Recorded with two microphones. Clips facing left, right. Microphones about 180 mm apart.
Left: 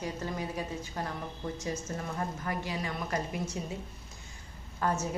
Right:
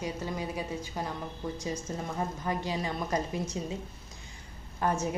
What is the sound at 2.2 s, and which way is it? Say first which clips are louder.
A woman's voice: right 4 dB; 20° right (ahead or behind).